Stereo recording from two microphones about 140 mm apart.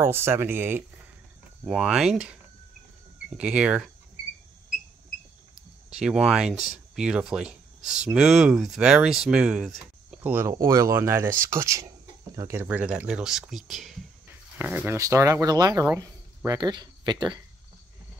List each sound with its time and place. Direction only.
0.0 s speech: 15° right (ahead or behind)
1.7 s speech: 5° right (ahead or behind)
3.3 s speech: 10° right (ahead or behind)
5.9 s speech: 5° right (ahead or behind)
14.6 s speech: 10° right (ahead or behind)
15.0 s speech: 25° right (ahead or behind)